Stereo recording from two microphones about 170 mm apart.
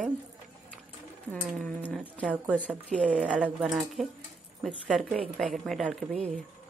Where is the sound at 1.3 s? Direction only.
5° left (ahead or behind).